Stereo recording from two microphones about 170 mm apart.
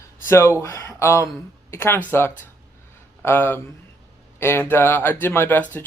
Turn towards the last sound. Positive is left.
turn(degrees=10)  # may be behind; listen again after turning